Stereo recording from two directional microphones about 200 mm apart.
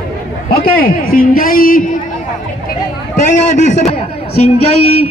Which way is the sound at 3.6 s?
35° left (ahead or behind).